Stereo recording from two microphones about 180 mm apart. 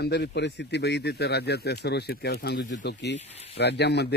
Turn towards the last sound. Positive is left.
turn(degrees=70)  # may be behind; listen again after turning